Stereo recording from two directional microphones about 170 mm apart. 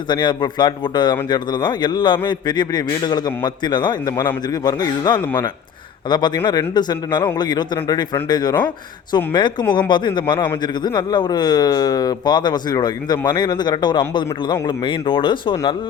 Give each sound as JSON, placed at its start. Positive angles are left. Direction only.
{"t": 0.1, "sound": "speech", "side_deg": 25}